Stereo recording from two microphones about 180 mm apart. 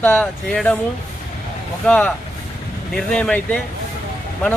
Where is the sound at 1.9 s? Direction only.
10° left (ahead or behind).